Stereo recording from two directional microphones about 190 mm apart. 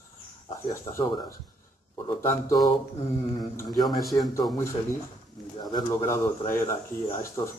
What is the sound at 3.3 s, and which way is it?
Speech, 20° left (ahead or behind).